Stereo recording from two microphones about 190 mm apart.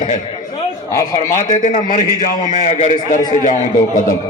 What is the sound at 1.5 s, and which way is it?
A man's voice, 45° left (ahead or behind).